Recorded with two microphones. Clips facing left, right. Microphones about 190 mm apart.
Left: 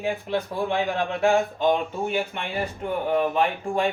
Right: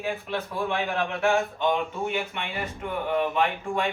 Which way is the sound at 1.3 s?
35° left (ahead or behind).